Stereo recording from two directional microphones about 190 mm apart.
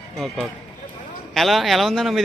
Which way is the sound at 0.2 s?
Centre (ahead or behind).